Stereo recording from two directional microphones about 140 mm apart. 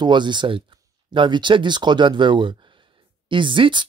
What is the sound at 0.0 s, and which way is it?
Speech, 35° right (ahead or behind).